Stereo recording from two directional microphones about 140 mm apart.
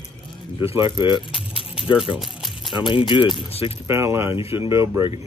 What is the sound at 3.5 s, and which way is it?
Speech, 45° left (ahead or behind).